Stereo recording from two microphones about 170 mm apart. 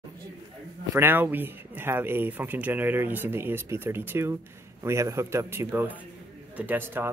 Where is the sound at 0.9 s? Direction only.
10° right (ahead or behind).